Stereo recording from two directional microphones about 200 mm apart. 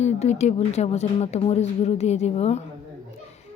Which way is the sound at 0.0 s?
35° left (ahead or behind).